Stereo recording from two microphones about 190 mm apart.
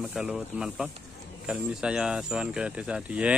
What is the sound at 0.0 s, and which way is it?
Speech, 5° right (ahead or behind).